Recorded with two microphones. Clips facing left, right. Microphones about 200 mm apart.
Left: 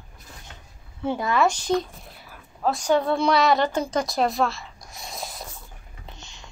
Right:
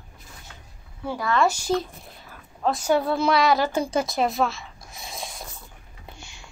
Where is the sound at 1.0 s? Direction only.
20° left (ahead or behind).